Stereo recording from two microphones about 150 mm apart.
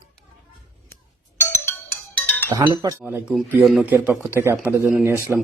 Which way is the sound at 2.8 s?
25° right (ahead or behind).